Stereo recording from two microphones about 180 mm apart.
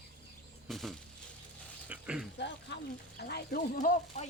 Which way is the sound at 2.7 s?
80° left.